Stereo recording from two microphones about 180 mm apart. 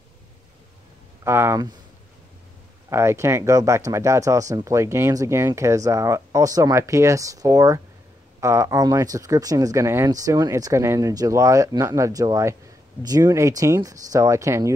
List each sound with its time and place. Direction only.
1.2 s speech: 15° right (ahead or behind)
2.9 s speech: 15° right (ahead or behind)